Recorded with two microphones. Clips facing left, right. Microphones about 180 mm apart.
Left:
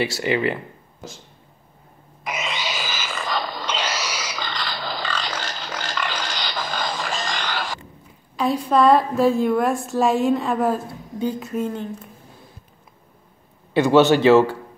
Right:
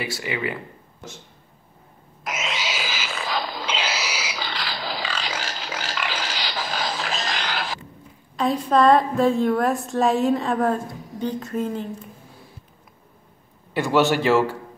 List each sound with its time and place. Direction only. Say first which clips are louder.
0.0 s a man's voice: left 6 dB; 30° left (ahead or behind)
2.2 s a sound: left 1 dB; centre (ahead or behind)
8.4 s a woman's voice: left 1 dB; centre (ahead or behind)
13.7 s a man's voice: left 5 dB; 20° left (ahead or behind)